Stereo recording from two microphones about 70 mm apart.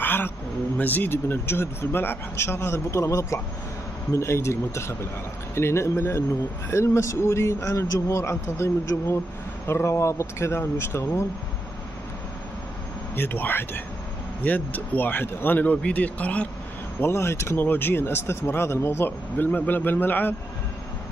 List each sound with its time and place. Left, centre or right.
0.0 s a sound: left
0.7 s speech: left
13.1 s speech: left
17.0 s speech: left
17.6 s speech: left